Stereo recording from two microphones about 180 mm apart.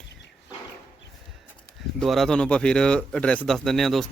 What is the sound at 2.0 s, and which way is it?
Speech, centre (ahead or behind).